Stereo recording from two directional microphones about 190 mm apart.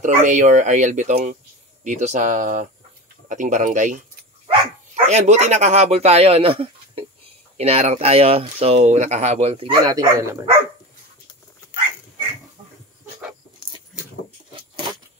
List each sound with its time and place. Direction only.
0.0 s speech: 40° right (ahead or behind); by 10.5 s 20° right (ahead or behind)
14.5 s keys jangling: 25° right (ahead or behind)